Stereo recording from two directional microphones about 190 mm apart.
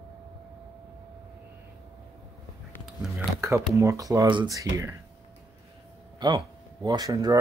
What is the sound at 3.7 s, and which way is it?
Speech, 15° right (ahead or behind).